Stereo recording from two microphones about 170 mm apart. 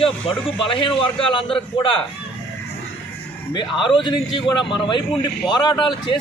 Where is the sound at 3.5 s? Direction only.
25° left (ahead or behind).